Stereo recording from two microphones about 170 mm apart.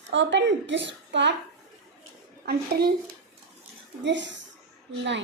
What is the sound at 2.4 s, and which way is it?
Speech, 60° right (ahead or behind).